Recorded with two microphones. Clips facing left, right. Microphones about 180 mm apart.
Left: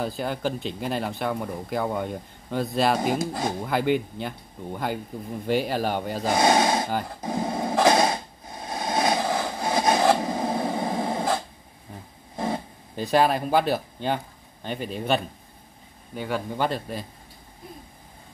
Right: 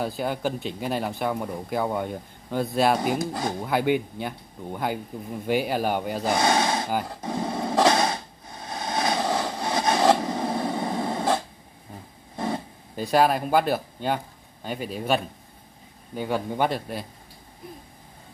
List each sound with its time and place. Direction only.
0.0 s speech: 5° right (ahead or behind)
6.3 s a sound: 20° left (ahead or behind)
6.9 s speech: centre (ahead or behind)
7.2 s a sound: 15° left (ahead or behind)
12.9 s speech: 5° right (ahead or behind)
16.2 s speech: 15° right (ahead or behind)